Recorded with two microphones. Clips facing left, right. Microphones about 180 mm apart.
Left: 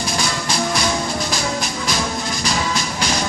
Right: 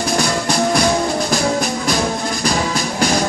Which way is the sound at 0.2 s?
40° right (ahead or behind).